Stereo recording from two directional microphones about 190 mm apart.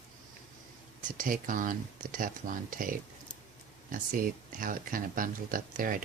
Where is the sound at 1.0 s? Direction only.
45° right (ahead or behind).